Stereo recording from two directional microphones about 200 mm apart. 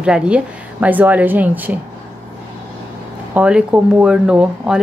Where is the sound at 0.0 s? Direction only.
5° right (ahead or behind).